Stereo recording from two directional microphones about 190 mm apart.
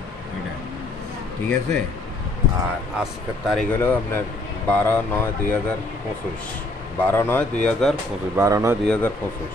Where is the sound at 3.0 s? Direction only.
5° right (ahead or behind).